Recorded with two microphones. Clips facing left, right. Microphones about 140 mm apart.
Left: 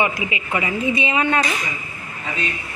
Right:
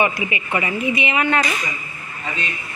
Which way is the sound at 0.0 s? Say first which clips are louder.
Right 1 dB; 15° left (ahead or behind).